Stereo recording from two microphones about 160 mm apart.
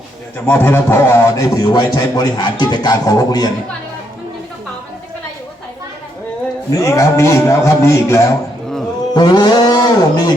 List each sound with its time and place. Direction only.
0.3 s a man's voice: 10° left (ahead or behind)
6.7 s a man's voice: 20° left (ahead or behind)
9.1 s livestock: 25° left (ahead or behind)